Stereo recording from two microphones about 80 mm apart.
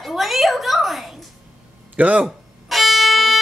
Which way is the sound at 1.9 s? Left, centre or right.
Centre.